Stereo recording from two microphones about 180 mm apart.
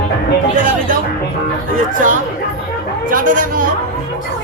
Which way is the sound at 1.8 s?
45° right (ahead or behind).